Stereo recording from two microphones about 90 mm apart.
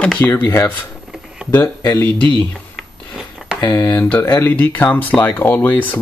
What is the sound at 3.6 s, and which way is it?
Speech, 35° left (ahead or behind).